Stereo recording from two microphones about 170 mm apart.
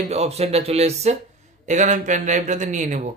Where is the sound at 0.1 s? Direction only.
40° right (ahead or behind).